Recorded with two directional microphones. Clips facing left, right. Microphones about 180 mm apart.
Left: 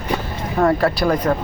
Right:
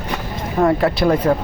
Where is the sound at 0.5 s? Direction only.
20° right (ahead or behind).